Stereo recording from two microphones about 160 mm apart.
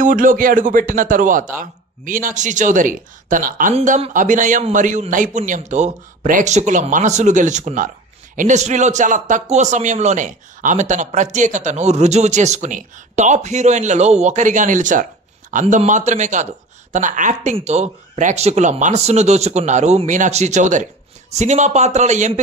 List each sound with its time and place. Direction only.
0.0 s speech: 60° right (ahead or behind)